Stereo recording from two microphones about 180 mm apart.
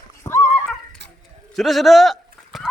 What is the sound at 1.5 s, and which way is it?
Speech, centre (ahead or behind).